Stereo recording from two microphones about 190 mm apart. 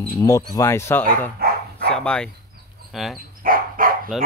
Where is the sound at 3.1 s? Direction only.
50° right (ahead or behind).